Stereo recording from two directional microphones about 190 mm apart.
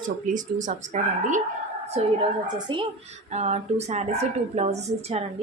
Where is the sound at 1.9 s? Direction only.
25° right (ahead or behind).